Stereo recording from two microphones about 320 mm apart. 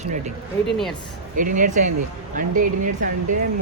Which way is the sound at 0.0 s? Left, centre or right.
Right.